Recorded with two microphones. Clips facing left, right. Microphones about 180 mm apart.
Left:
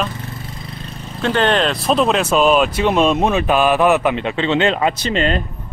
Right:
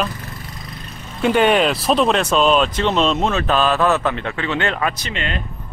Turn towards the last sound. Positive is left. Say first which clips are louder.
# left 8 dB
turn(degrees=35)  # may be behind; listen again after turning